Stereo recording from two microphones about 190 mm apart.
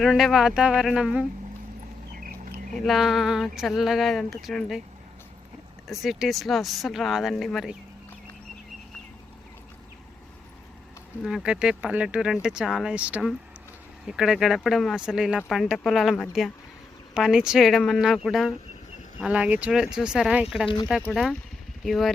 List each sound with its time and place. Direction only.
0.0 s speech: centre (ahead or behind)
2.1 s a sound: 50° right (ahead or behind)
2.8 s speech: centre (ahead or behind)
5.9 s speech: centre (ahead or behind)
11.2 s speech: centre (ahead or behind)